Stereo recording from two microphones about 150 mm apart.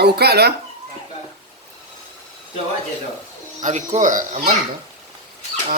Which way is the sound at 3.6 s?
55° right (ahead or behind).